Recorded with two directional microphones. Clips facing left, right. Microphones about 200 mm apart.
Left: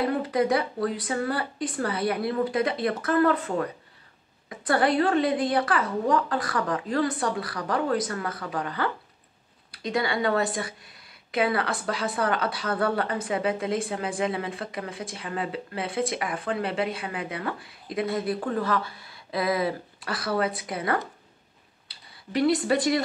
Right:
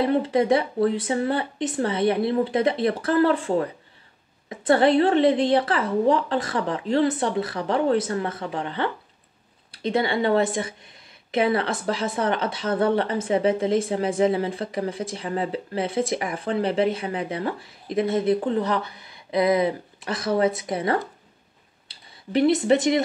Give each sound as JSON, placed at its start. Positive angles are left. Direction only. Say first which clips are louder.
{"t": 0.0, "sound": "a woman's voice", "louder": "right 4 dB", "side_deg": -25}